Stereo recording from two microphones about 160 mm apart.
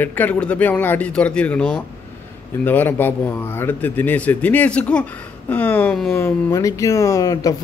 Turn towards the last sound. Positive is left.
turn(degrees=20)  # may be behind; listen again after turning